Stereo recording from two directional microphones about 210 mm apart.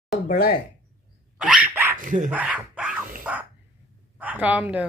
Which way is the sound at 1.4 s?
5° right (ahead or behind).